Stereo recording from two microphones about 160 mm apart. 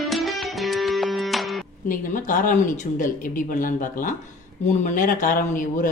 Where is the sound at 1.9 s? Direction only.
55° left (ahead or behind).